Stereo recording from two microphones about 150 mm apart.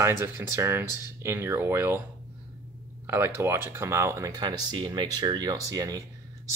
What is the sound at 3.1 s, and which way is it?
Speech, 15° right (ahead or behind).